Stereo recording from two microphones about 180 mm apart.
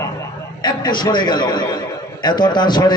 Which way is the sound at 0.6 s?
25° left (ahead or behind).